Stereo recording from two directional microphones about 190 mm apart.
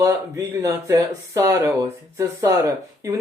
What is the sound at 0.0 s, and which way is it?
Speech, 15° right (ahead or behind).